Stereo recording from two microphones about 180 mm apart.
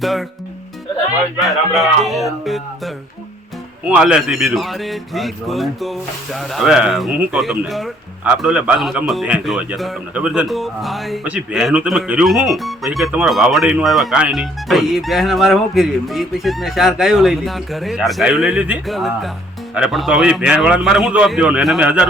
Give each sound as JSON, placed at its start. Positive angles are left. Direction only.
{"t": 0.0, "sound": "speech", "side_deg": 0}
{"t": 1.4, "sound": "a man's voice", "side_deg": 0}